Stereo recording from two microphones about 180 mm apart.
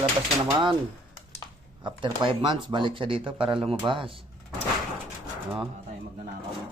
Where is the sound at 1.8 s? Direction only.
25° right (ahead or behind).